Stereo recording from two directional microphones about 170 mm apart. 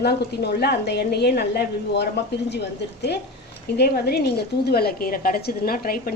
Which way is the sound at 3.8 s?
70° left (ahead or behind).